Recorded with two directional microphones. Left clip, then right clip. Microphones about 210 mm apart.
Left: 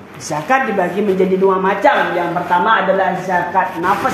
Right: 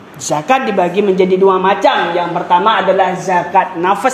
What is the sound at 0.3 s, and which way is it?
Speech, 30° right (ahead or behind).